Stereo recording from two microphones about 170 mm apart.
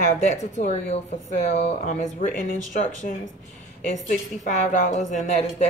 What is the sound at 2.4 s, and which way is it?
Speech, 50° left (ahead or behind).